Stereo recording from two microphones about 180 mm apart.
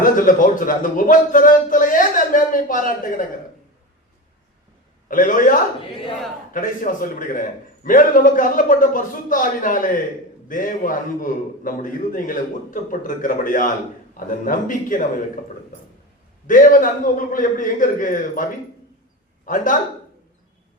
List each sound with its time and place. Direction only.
0.0 s speech: 50° left (ahead or behind)
5.0 s speech: 50° left (ahead or behind)
16.5 s speech: 45° left (ahead or behind)
19.5 s speech: 45° left (ahead or behind)